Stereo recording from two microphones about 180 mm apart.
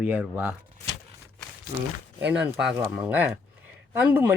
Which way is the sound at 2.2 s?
5° right (ahead or behind).